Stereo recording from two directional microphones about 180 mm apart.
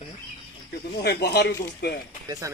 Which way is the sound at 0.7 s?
60° left (ahead or behind).